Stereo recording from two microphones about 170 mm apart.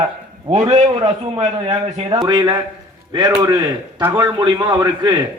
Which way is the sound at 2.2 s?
20° right (ahead or behind).